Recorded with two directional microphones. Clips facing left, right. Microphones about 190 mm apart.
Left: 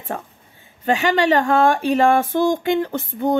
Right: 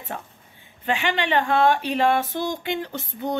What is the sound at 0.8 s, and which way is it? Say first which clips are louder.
A woman's voice: left 7 dB; 40° left (ahead or behind).